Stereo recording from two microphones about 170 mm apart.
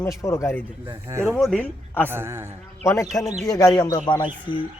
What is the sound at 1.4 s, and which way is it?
Speech, 5° left (ahead or behind).